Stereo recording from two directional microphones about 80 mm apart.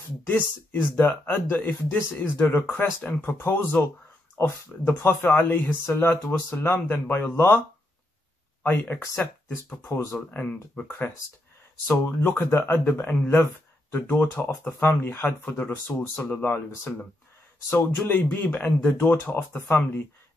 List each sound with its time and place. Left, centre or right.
0.3 s speech: left
8.6 s speech: left
12.2 s speech: left